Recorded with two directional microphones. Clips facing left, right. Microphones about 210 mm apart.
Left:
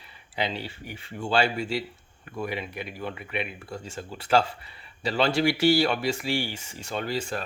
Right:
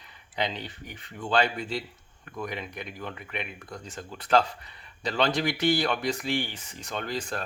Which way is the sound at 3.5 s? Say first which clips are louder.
Left 4 dB; 30° left (ahead or behind).